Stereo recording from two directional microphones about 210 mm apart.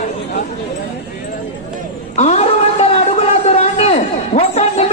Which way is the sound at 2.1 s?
35° left (ahead or behind).